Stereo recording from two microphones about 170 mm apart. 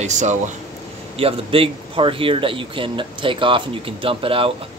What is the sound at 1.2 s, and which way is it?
Speech, 35° right (ahead or behind).